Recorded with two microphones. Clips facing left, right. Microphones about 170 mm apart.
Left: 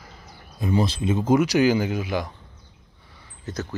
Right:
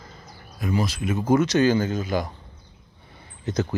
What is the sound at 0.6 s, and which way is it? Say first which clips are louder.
Speech: left 2 dB; 25° left (ahead or behind).